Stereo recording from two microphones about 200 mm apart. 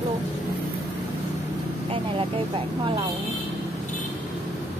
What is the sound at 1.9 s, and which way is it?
Speech, 30° right (ahead or behind).